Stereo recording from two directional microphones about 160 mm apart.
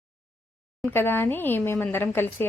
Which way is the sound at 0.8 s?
10° left (ahead or behind).